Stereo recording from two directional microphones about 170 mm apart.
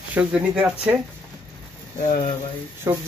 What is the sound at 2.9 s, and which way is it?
Speech, 20° right (ahead or behind).